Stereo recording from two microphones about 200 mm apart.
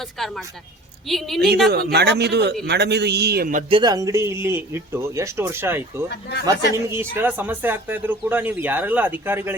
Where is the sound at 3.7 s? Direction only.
20° right (ahead or behind).